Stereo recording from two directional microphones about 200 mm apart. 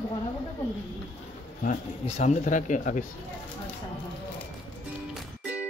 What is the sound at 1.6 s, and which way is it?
Speech, 40° left (ahead or behind).